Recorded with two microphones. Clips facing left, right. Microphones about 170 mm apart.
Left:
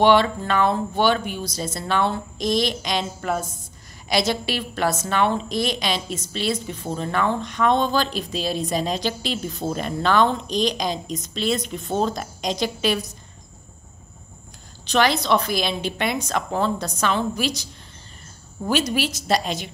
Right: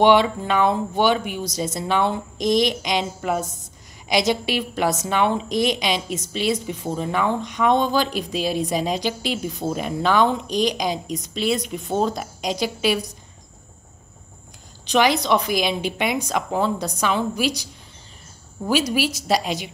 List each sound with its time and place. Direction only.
0.0 s a woman's voice: 15° right (ahead or behind)
14.9 s a woman's voice: 15° right (ahead or behind)